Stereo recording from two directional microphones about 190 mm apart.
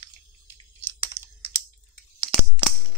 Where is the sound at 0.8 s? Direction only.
20° right (ahead or behind).